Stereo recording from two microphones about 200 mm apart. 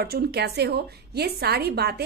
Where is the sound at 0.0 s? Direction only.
55° right (ahead or behind).